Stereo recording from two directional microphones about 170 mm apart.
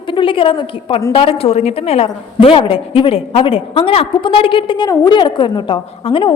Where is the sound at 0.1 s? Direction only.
30° left (ahead or behind).